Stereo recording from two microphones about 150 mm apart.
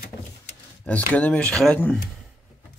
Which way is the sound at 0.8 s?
10° left (ahead or behind).